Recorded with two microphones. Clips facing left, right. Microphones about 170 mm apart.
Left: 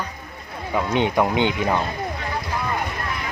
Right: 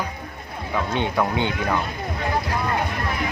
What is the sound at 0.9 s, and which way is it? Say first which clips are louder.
Speech: left 4 dB; 15° left (ahead or behind).